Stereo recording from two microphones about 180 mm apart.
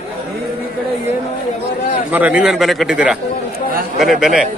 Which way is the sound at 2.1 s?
10° right (ahead or behind).